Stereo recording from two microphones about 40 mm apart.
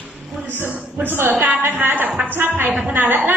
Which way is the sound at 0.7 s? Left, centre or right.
Right.